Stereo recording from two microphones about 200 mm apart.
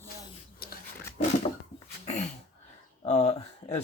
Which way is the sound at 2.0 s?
35° left (ahead or behind).